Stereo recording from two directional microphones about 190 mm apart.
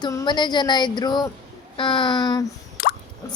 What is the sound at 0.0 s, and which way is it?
A woman's voice, 20° left (ahead or behind).